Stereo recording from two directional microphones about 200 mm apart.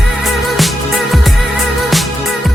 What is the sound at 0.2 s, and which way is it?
Music, centre (ahead or behind).